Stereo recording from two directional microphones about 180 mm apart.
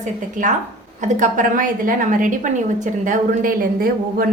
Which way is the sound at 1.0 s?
45° right (ahead or behind).